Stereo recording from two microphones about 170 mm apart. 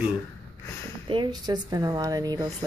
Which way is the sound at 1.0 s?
30° right (ahead or behind).